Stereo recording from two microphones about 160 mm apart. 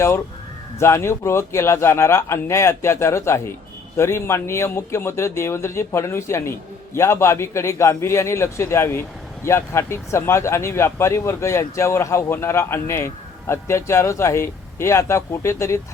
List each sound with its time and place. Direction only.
0.8 s a man's voice: 15° left (ahead or behind)